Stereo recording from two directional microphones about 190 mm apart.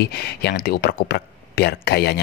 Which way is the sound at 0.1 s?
60° left (ahead or behind).